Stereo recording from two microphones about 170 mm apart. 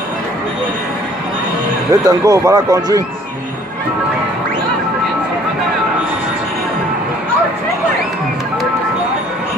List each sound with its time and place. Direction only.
1.9 s speech: 20° right (ahead or behind)